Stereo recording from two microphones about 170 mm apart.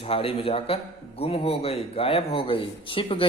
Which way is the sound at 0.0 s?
35° left (ahead or behind).